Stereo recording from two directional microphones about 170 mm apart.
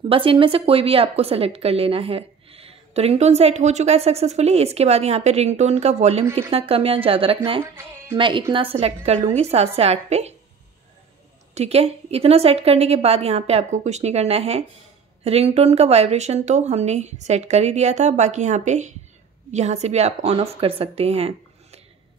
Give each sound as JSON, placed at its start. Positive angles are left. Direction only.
{"t": 0.1, "sound": "a woman's voice", "side_deg": -30}
{"t": 7.6, "sound": "speech", "side_deg": -15}
{"t": 8.2, "sound": "a woman's voice", "side_deg": -30}
{"t": 11.5, "sound": "a woman's voice", "side_deg": -40}